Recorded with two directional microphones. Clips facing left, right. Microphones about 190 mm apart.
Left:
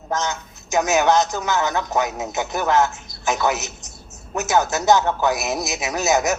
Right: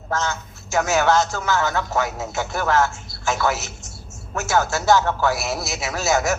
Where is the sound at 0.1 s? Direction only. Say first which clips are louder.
Even; 20° left (ahead or behind).